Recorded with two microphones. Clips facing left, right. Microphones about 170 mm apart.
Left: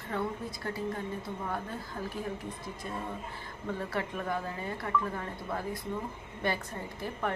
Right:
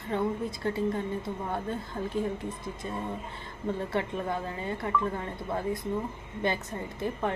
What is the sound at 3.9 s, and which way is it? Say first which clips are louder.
A woman's voice: right 3 dB; 25° right (ahead or behind).